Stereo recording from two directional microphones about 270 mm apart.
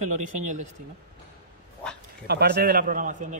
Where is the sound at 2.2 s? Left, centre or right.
Right.